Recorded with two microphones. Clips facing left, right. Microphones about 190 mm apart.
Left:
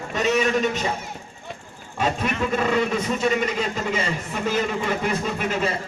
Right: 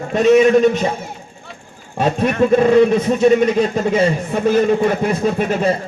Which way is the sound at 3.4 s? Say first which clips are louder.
Right 9 dB; 55° right (ahead or behind).